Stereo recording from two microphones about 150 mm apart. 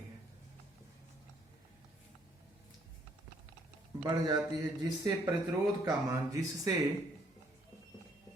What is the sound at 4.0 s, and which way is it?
Speech, 25° right (ahead or behind).